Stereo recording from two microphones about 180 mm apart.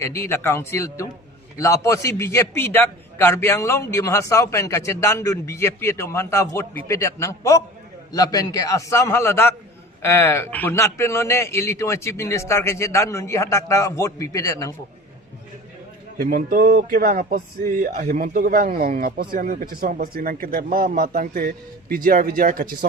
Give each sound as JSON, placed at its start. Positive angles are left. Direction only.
{"t": 0.0, "sound": "a man's voice", "side_deg": 15}
{"t": 16.1, "sound": "speech", "side_deg": -55}